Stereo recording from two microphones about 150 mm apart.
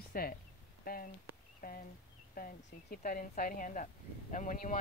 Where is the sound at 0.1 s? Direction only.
80° left.